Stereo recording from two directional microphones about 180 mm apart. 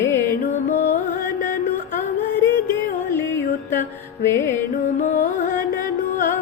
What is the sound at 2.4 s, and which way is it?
Music, 15° left (ahead or behind).